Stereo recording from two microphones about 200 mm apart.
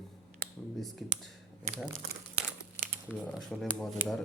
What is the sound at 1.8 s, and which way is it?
Crumpling, 5° right (ahead or behind).